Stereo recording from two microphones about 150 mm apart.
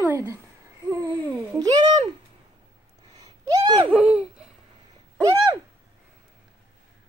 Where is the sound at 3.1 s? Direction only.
25° right (ahead or behind).